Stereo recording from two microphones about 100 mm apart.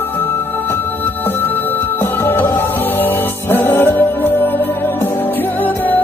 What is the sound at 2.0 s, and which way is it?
Music, 20° left (ahead or behind).